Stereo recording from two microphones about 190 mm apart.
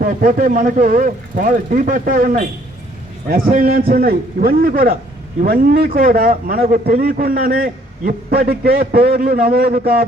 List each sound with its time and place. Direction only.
0.0 s a man's voice: 45° right (ahead or behind)